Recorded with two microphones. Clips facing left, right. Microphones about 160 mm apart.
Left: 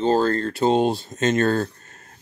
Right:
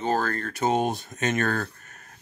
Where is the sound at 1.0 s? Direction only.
25° left (ahead or behind).